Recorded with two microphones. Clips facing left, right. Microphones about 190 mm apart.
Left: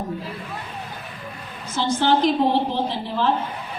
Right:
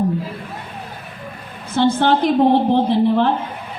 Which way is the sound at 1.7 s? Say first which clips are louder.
Right 5 dB; 60° right (ahead or behind).